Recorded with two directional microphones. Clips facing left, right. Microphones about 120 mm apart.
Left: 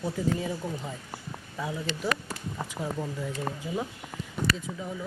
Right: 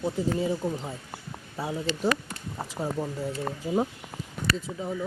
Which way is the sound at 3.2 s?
40° right (ahead or behind).